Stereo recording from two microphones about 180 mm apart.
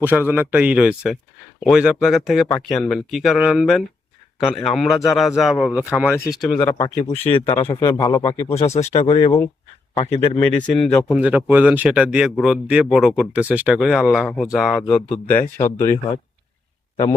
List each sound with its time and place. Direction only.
0.0 s a man's voice: 10° right (ahead or behind)
6.7 s speech: 15° left (ahead or behind)
7.3 s speech: 35° left (ahead or behind)
7.5 s speech: 20° left (ahead or behind)
8.5 s speech: 35° left (ahead or behind)
10.3 s speech: 5° left (ahead or behind)
15.5 s speech: 40° left (ahead or behind)